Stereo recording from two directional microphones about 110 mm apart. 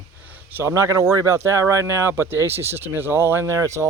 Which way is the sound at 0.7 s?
30° right (ahead or behind).